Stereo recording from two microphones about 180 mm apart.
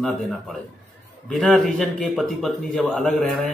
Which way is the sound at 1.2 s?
Centre (ahead or behind).